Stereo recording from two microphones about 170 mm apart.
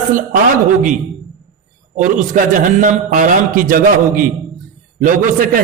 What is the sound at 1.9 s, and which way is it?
A man's voice, 50° right (ahead or behind).